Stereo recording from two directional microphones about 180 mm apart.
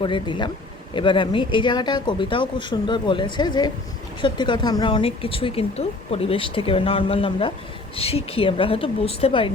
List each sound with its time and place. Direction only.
0.0 s speech: 25° left (ahead or behind)